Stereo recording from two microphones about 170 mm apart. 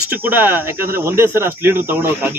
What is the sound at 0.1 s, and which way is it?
Speech, 10° right (ahead or behind).